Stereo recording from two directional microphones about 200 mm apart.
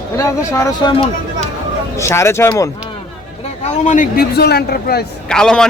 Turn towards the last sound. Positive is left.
turn(degrees=5)  # may be behind; listen again after turning